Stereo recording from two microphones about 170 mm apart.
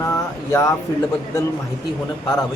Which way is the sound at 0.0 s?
20° left (ahead or behind).